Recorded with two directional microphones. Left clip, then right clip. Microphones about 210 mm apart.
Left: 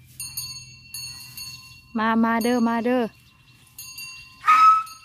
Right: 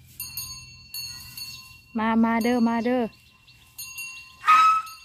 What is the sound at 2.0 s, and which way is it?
Speech, 20° left (ahead or behind).